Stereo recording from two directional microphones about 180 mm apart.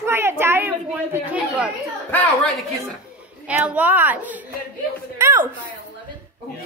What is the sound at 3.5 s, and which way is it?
A woman's voice, 5° right (ahead or behind).